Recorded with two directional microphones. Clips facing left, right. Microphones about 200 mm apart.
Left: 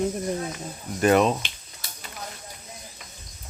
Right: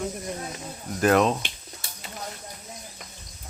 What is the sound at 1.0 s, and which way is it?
Speech, centre (ahead or behind).